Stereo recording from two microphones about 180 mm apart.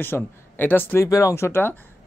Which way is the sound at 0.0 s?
10° left (ahead or behind).